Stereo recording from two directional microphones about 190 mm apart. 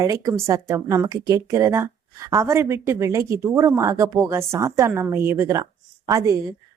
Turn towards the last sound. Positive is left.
turn(degrees=-15)  # may be behind; listen again after turning